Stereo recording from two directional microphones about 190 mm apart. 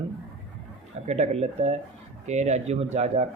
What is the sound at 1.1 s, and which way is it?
Speech, 35° right (ahead or behind).